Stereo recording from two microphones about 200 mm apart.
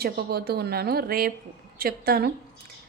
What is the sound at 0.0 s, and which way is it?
A woman's voice, 50° right (ahead or behind).